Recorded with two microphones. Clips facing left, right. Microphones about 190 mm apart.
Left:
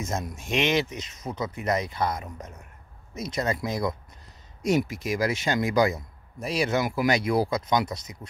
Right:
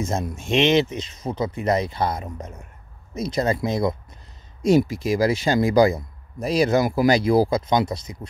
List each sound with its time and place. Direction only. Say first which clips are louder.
0.0 s speech: right 5 dB; 30° right (ahead or behind)